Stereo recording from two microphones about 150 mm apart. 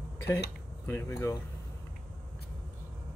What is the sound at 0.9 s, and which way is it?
Speech, 15° left (ahead or behind).